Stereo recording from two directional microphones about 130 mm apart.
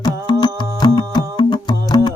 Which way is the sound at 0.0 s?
35° left (ahead or behind).